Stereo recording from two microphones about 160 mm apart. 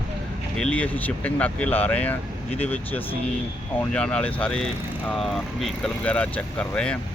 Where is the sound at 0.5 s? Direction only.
5° left (ahead or behind).